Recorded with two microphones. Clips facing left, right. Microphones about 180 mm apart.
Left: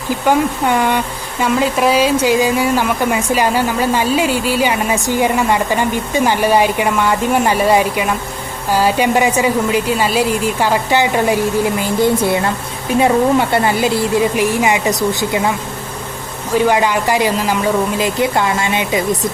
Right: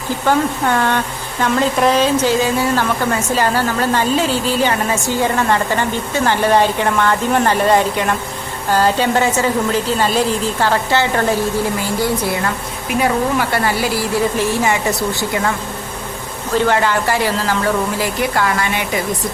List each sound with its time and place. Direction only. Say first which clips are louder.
0.3 s speech: left 2 dB; 15° left (ahead or behind)
16.6 s speech: left 2 dB; 15° left (ahead or behind)